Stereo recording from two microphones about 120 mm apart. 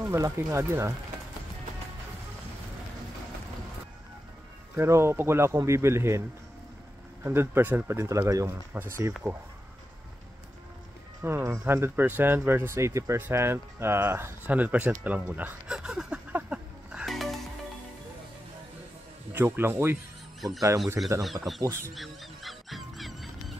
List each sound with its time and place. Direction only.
0.1 s speech: 25° right (ahead or behind)
4.7 s speech: 20° right (ahead or behind)
7.2 s speech: 20° right (ahead or behind)
11.2 s speech: 25° right (ahead or behind); by 17.4 s centre (ahead or behind)
19.3 s speech: 20° right (ahead or behind)
21.2 s speech: centre (ahead or behind)
21.6 s speech: 20° right (ahead or behind)
21.9 s music: centre (ahead or behind)